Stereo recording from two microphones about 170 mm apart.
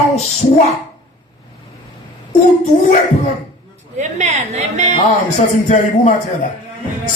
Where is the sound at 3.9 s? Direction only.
45° right (ahead or behind).